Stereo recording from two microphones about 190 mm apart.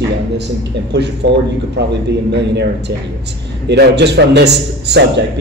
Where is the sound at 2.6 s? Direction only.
65° right (ahead or behind).